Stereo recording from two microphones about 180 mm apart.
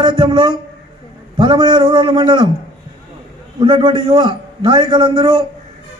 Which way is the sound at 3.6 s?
25° right (ahead or behind).